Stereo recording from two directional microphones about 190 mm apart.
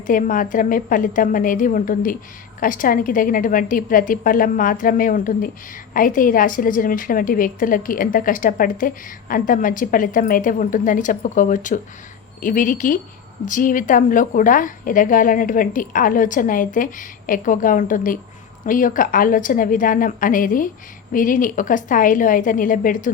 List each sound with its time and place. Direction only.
0.1 s a woman's voice: 45° left (ahead or behind)